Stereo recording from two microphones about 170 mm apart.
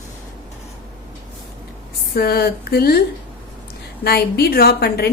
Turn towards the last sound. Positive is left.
turn(degrees=65)  # may be behind; listen again after turning